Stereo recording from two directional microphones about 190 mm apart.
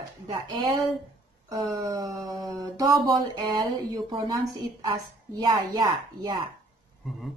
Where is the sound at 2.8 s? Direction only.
20° right (ahead or behind).